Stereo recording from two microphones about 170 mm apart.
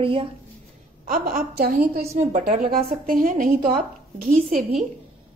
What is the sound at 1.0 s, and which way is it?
A woman's voice, 60° right (ahead or behind).